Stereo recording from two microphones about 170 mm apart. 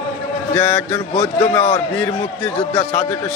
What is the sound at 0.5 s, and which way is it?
Speech, 5° left (ahead or behind).